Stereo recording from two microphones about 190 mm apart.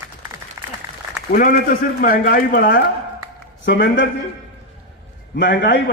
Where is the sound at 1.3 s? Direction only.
50° left (ahead or behind).